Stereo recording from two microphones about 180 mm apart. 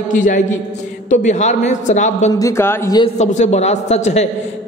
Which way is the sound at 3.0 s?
40° left (ahead or behind).